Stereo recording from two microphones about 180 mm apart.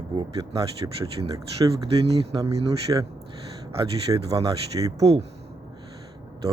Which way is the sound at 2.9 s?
15° right (ahead or behind).